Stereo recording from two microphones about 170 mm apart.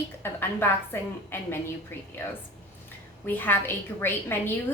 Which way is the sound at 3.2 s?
10° left (ahead or behind).